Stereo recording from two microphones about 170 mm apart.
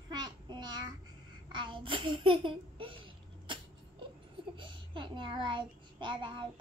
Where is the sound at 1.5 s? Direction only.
30° right (ahead or behind).